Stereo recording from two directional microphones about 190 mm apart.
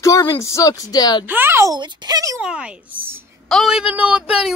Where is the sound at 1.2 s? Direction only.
10° right (ahead or behind).